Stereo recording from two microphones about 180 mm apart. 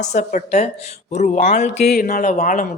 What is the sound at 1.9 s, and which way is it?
Speech, 55° left (ahead or behind).